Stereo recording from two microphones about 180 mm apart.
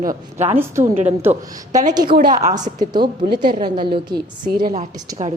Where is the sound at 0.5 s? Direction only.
15° right (ahead or behind).